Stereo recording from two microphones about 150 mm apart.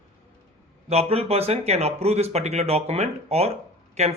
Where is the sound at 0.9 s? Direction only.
45° right (ahead or behind).